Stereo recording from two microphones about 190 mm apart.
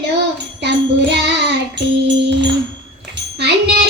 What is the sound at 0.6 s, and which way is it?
Music, 65° right (ahead or behind).